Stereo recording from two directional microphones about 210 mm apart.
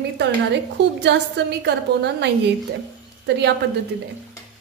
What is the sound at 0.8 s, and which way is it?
A woman's voice, 55° right (ahead or behind).